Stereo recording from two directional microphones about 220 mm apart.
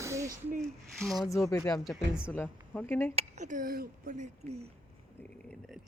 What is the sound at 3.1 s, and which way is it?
Speech, 30° right (ahead or behind).